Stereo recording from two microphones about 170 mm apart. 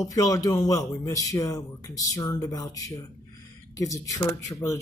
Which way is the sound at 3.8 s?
20° left (ahead or behind).